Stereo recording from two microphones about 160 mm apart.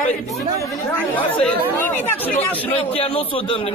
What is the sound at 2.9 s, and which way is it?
Speech, 35° left (ahead or behind).